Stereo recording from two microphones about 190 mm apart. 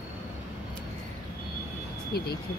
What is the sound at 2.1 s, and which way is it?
Speech, 55° left (ahead or behind).